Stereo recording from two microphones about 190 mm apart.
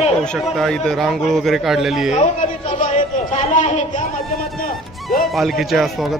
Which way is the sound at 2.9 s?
40° left (ahead or behind).